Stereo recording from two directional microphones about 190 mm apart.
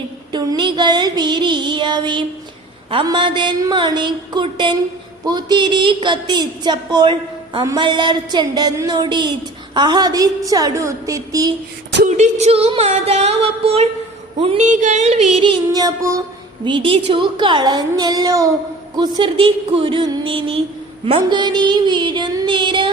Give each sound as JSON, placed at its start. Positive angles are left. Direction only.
{"t": 0.3, "sound": "music", "side_deg": -25}
{"t": 2.9, "sound": "a woman's voice", "side_deg": -25}
{"t": 12.0, "sound": "a sound", "side_deg": -40}
{"t": 14.3, "sound": "a woman's voice", "side_deg": -30}
{"t": 14.6, "sound": "a sound", "side_deg": -40}
{"t": 16.6, "sound": "a woman's voice", "side_deg": -25}